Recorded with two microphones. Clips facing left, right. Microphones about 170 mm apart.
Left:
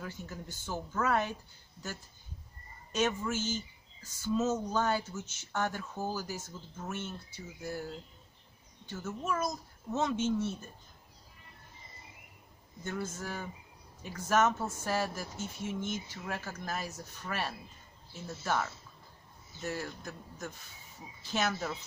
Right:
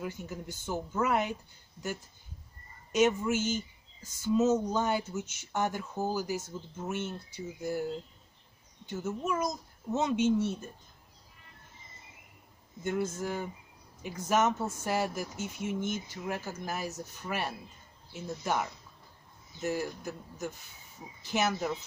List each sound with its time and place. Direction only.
0.0 s speech: 15° right (ahead or behind)
2.9 s speech: 15° right (ahead or behind)
8.9 s speech: 15° right (ahead or behind)
12.8 s speech: 15° right (ahead or behind)